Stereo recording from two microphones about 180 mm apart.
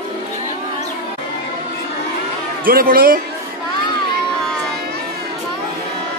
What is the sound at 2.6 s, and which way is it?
Speech, 55° right (ahead or behind).